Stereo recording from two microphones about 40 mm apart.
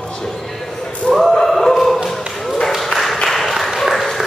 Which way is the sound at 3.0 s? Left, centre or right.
Centre.